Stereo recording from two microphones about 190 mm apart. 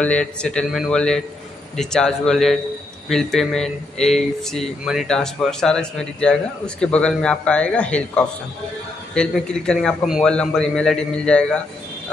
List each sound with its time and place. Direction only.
0.0 s speech: 5° left (ahead or behind)